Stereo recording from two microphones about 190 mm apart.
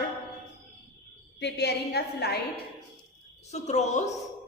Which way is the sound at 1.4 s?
60° left (ahead or behind).